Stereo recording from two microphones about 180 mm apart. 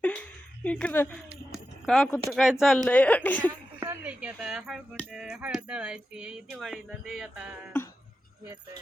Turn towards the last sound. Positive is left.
turn(degrees=-5)  # may be behind; listen again after turning